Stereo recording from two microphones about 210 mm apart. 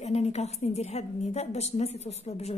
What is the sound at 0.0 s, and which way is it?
A woman's voice, 30° left (ahead or behind).